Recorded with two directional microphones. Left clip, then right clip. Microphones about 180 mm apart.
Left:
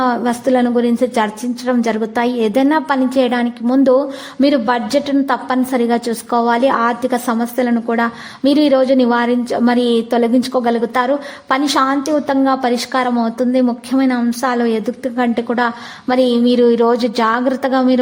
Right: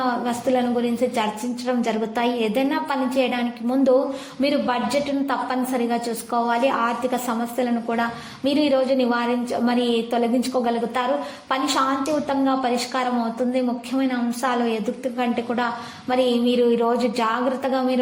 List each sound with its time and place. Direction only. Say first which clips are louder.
0.0 s a woman's voice: left 7 dB; 40° left (ahead or behind)